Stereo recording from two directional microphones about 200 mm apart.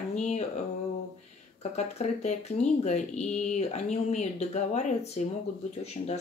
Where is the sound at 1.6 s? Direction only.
35° left (ahead or behind).